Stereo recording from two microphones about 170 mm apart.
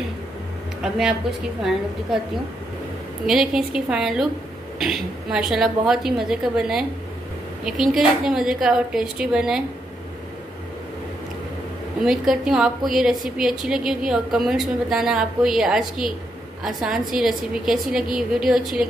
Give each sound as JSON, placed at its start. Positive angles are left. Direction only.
{"t": 0.8, "sound": "a woman's voice", "side_deg": -5}
{"t": 3.3, "sound": "a woman's voice", "side_deg": 0}
{"t": 12.0, "sound": "a woman's voice", "side_deg": 0}